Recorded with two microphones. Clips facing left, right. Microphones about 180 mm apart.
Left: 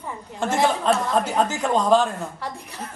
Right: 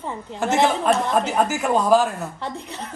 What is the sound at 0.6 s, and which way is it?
Speech, 5° right (ahead or behind).